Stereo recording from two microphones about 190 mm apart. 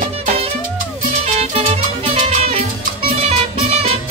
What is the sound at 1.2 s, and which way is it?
Music, 35° right (ahead or behind).